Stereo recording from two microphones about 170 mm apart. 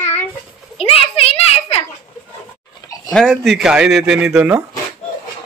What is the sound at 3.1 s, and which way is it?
Speech, centre (ahead or behind).